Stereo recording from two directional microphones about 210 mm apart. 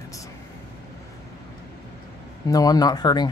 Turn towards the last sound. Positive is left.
turn(degrees=20)  # may be behind; listen again after turning